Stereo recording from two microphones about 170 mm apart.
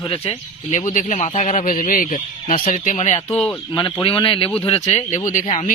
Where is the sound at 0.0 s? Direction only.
30° left (ahead or behind).